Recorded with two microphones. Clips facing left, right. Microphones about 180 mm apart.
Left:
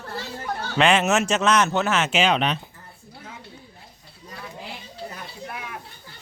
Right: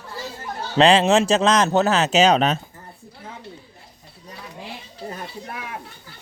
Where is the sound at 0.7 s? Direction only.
30° right (ahead or behind).